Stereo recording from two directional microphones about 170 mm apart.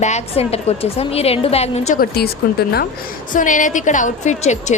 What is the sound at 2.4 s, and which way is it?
A woman's voice, 55° left (ahead or behind).